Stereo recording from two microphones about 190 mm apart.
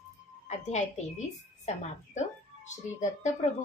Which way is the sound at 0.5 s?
40° left (ahead or behind).